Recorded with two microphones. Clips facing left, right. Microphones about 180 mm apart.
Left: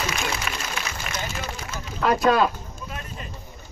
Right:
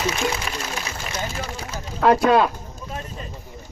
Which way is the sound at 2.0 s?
60° right (ahead or behind).